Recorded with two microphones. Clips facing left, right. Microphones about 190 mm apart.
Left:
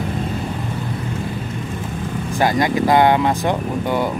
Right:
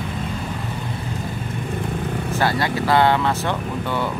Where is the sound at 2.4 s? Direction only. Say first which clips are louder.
Left 5 dB; 15° left (ahead or behind).